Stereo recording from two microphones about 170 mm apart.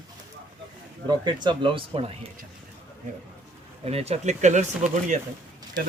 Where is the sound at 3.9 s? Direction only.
35° right (ahead or behind).